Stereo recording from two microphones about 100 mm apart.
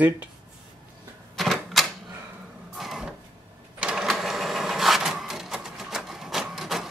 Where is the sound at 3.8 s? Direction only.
5° right (ahead or behind).